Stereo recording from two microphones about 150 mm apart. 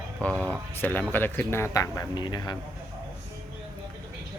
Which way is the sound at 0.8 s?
10° left (ahead or behind).